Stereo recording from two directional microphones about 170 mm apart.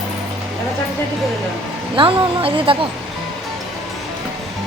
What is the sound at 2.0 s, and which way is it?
Speech, 30° right (ahead or behind).